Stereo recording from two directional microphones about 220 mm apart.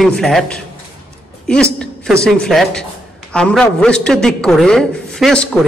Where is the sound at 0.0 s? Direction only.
Centre (ahead or behind).